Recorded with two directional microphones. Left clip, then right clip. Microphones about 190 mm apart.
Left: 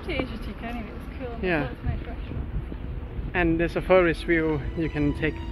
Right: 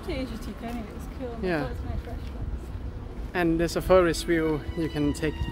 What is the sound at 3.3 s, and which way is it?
Speech, 5° right (ahead or behind).